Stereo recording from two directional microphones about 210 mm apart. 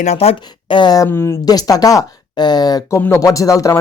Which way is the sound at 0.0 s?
30° left (ahead or behind).